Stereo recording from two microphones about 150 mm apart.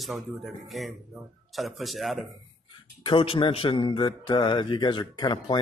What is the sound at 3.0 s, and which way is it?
Speech, 35° left (ahead or behind).